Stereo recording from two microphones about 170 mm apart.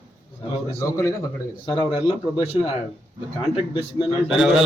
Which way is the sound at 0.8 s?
15° left (ahead or behind).